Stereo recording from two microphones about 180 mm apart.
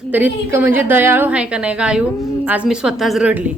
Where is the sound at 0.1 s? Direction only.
10° right (ahead or behind).